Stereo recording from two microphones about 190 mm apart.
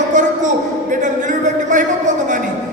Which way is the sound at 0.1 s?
40° right (ahead or behind).